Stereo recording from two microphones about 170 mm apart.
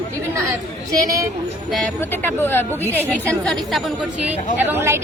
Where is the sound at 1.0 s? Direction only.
20° right (ahead or behind).